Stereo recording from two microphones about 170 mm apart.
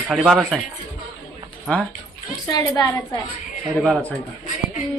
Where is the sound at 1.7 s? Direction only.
Centre (ahead or behind).